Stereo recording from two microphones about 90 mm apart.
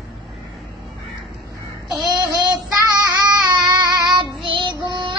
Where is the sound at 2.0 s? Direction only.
45° right (ahead or behind).